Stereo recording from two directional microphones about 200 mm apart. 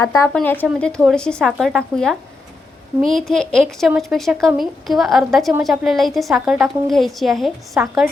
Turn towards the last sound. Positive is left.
turn(degrees=0)  # may be behind; listen again after turning